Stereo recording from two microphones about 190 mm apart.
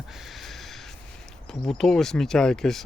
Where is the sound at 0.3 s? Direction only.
Centre (ahead or behind).